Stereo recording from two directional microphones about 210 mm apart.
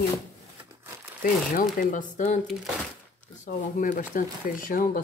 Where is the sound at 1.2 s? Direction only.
40° left (ahead or behind).